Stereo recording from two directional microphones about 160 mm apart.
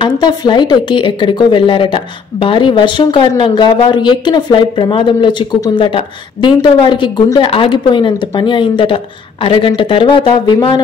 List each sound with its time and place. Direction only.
0.0 s speech: 25° left (ahead or behind)